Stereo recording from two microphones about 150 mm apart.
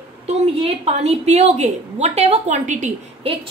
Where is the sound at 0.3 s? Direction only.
40° right (ahead or behind).